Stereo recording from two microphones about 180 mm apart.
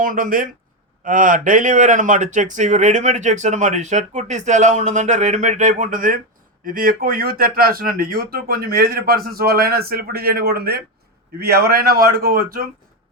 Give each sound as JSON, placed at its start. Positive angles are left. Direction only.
{"t": 0.0, "sound": "speech", "side_deg": -50}